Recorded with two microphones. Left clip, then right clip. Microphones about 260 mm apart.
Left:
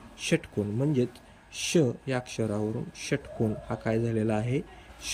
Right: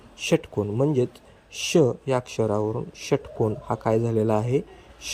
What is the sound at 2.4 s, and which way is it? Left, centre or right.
Speech, right.